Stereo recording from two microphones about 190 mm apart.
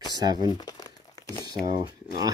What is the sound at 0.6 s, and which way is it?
Crumpling, 20° left (ahead or behind).